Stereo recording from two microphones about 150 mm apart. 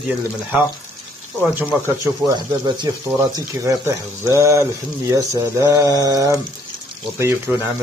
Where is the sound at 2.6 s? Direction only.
30° right (ahead or behind).